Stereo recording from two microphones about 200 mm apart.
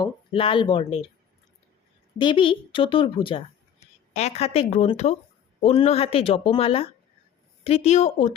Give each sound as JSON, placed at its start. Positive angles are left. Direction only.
{"t": 0.0, "sound": "speech", "side_deg": 25}
{"t": 2.1, "sound": "a woman's voice", "side_deg": 25}